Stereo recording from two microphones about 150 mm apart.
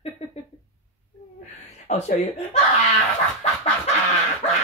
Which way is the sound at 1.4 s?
45° left (ahead or behind).